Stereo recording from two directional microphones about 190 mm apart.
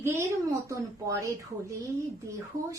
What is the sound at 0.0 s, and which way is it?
A woman's voice, 15° right (ahead or behind).